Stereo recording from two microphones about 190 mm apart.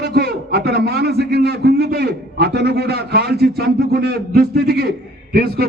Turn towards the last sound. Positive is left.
turn(degrees=-55)  # may be behind; listen again after turning